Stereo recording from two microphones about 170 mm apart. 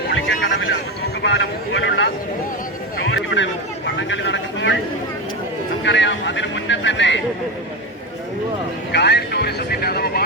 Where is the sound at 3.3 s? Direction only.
90° left.